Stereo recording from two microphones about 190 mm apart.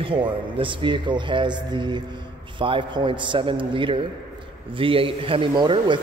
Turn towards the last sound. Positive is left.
turn(degrees=-25)  # may be behind; listen again after turning